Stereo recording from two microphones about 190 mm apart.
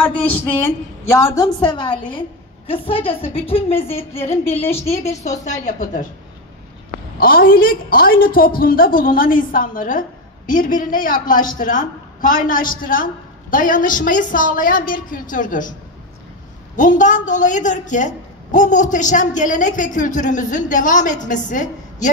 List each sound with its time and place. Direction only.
0.0 s a woman's voice: 10° left (ahead or behind); by 6.0 s 40° left (ahead or behind)
7.2 s a woman's voice: 50° left (ahead or behind)
16.7 s a woman's voice: 40° left (ahead or behind)